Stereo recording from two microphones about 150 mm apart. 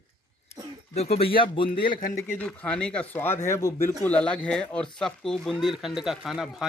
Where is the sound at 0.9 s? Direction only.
45° left (ahead or behind).